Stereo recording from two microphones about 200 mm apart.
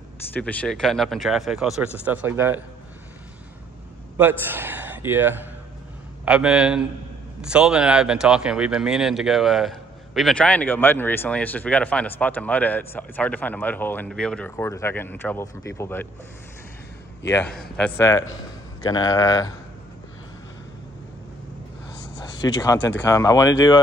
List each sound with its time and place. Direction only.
0.3 s speech: 5° left (ahead or behind); by 2.6 s 10° right (ahead or behind)
4.2 s speech: 10° right (ahead or behind); by 16.1 s 10° left (ahead or behind)
17.3 s speech: 5° left (ahead or behind)
22.2 s speech: 15° left (ahead or behind)